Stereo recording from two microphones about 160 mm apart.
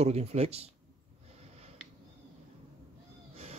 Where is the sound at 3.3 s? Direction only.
40° right (ahead or behind).